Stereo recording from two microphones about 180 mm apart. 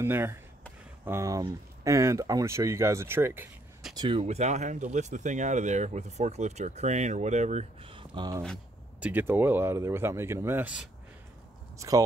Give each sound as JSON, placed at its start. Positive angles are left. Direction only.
{"t": 0.0, "sound": "speech", "side_deg": -15}
{"t": 4.2, "sound": "speech", "side_deg": -40}
{"t": 9.0, "sound": "speech", "side_deg": -10}